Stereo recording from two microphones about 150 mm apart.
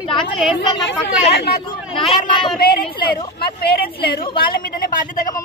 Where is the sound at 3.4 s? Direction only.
90° left; by 5.2 s 70° left (ahead or behind).